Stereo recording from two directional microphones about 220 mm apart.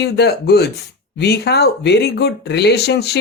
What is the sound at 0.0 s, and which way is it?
Speech, 50° left (ahead or behind).